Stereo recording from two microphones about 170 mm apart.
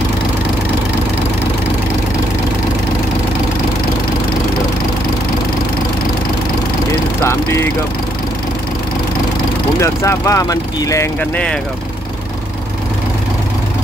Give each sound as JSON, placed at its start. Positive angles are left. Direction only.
{"t": 9.8, "sound": "speech", "side_deg": 15}
{"t": 11.1, "sound": "speech", "side_deg": 10}